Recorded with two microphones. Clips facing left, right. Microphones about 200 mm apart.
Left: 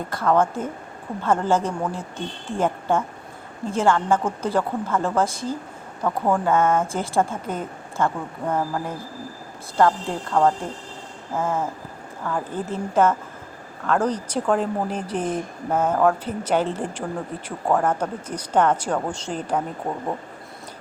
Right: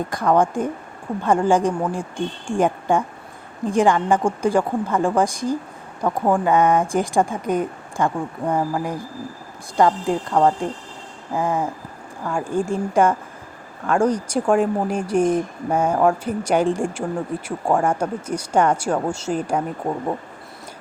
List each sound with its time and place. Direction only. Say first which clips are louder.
0.1 s speech: right 1 dB; 15° right (ahead or behind)